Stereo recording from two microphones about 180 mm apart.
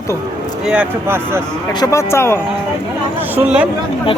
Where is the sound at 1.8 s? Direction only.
15° left (ahead or behind).